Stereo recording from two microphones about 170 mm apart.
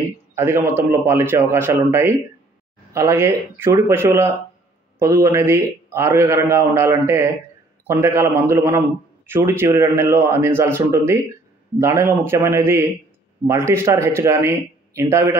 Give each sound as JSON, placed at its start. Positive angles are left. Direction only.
{"t": 0.4, "sound": "a man's voice", "side_deg": -15}